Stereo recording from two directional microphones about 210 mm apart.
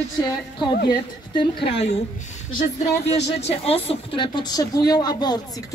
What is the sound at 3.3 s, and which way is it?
A woman's voice, 30° left (ahead or behind).